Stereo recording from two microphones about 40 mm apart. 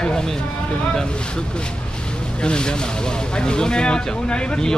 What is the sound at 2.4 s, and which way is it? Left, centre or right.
Speech, left.